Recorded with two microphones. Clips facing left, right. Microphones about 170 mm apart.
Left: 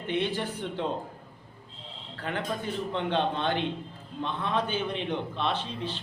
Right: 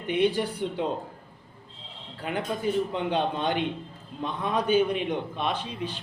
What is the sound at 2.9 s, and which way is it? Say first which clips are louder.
A man's voice: right 1 dB; 10° right (ahead or behind).